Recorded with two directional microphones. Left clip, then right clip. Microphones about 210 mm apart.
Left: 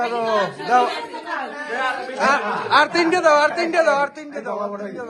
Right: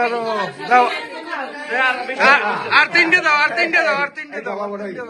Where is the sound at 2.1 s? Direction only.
10° left (ahead or behind).